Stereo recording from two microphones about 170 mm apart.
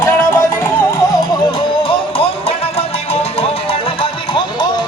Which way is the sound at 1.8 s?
35° left (ahead or behind).